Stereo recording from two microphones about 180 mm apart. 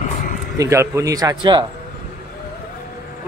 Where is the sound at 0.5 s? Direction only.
15° right (ahead or behind).